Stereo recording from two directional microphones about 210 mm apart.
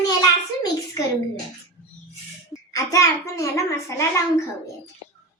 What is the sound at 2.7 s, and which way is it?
Speech, 15° left (ahead or behind).